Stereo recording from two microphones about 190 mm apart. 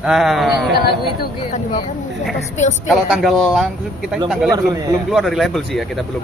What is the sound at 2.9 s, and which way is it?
A man's voice, centre (ahead or behind).